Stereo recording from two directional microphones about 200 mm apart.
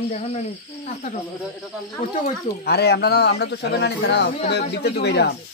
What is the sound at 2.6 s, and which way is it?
Speech, 55° left (ahead or behind).